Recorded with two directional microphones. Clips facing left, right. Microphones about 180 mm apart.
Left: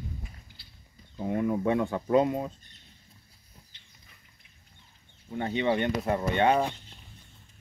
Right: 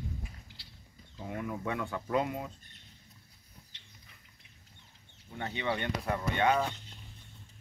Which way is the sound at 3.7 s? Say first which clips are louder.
Right 1 dB; 80° right.